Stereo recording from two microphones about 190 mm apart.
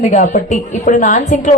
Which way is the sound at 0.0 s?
40° left (ahead or behind).